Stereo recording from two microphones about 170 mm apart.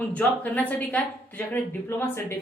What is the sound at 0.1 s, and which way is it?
Speech, 10° left (ahead or behind).